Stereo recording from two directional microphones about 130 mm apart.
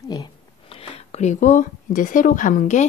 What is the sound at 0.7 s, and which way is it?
Speech, 50° left (ahead or behind).